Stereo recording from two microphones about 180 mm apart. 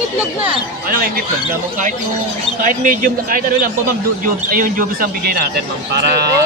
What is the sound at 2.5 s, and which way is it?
Speech, 45° right (ahead or behind).